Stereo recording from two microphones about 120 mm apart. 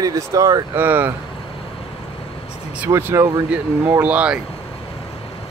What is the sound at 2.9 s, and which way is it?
Speech, 25° right (ahead or behind).